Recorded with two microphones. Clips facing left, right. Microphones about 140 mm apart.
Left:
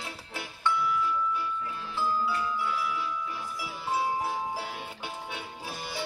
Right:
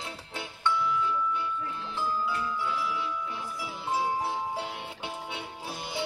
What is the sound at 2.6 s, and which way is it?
Music, 20° right (ahead or behind).